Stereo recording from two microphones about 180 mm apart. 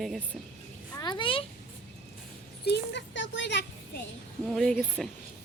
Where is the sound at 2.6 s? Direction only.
70° left (ahead or behind).